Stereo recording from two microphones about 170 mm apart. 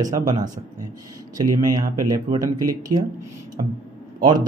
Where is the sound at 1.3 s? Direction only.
20° right (ahead or behind).